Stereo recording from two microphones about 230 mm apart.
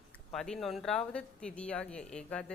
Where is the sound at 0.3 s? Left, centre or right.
Centre.